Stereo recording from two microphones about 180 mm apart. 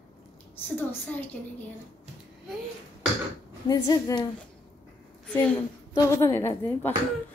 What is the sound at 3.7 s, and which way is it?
Speech, 20° left (ahead or behind).